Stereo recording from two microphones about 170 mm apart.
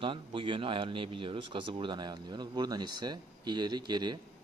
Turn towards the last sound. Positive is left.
turn(degrees=-25)  # may be behind; listen again after turning